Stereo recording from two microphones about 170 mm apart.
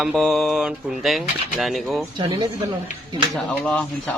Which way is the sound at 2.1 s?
30° right (ahead or behind).